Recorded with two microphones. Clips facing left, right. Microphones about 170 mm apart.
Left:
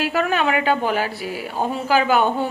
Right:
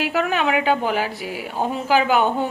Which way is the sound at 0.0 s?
15° right (ahead or behind).